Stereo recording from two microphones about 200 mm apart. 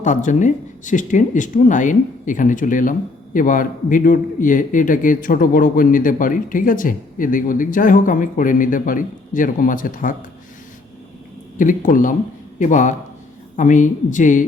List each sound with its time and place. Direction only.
0.0 s a man's voice: 40° left (ahead or behind)
11.5 s a man's voice: 40° left (ahead or behind)